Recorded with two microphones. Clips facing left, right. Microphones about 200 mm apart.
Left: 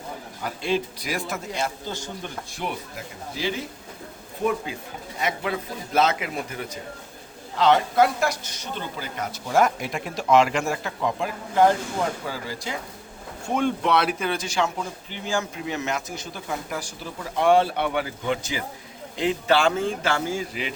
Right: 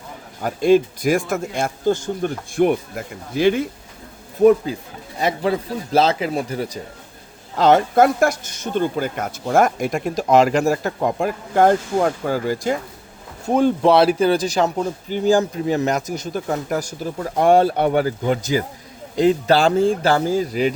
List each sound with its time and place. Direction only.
0.4 s speech: 45° right (ahead or behind)
4.7 s speech: 35° right (ahead or behind)
7.5 s speech: 45° right (ahead or behind)
13.5 s speech: 35° right (ahead or behind)